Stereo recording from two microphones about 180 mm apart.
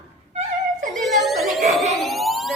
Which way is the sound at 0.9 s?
Centre (ahead or behind).